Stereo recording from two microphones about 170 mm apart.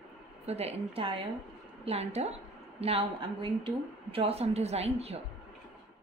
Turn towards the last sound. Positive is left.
turn(degrees=-35)  # may be behind; listen again after turning